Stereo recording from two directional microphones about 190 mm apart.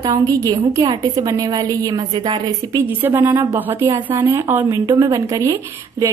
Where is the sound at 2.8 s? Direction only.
10° right (ahead or behind).